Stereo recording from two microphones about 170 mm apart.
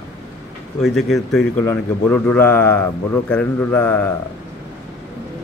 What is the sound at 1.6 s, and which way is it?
A man's voice, 15° left (ahead or behind).